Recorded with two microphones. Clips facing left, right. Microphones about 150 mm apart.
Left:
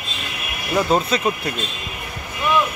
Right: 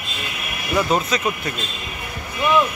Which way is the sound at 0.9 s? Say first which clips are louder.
Left 2 dB; 30° left (ahead or behind).